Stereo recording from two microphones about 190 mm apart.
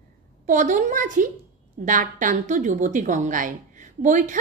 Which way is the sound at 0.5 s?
40° right (ahead or behind).